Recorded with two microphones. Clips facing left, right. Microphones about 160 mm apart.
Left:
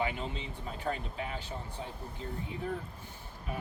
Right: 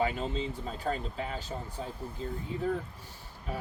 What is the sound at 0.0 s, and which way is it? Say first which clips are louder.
Speech: right 4 dB; 40° right (ahead or behind).